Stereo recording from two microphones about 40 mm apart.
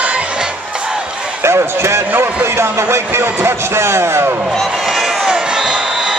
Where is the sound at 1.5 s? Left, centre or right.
Right.